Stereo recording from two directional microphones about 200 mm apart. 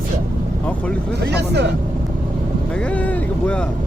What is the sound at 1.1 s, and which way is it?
Speech, 55° right (ahead or behind).